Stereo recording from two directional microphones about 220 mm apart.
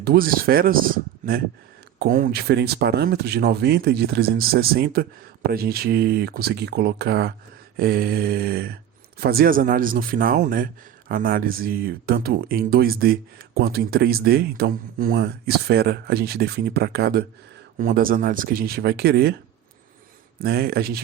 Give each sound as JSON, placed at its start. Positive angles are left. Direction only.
{"t": 0.0, "sound": "speech", "side_deg": -45}
{"t": 20.4, "sound": "speech", "side_deg": -45}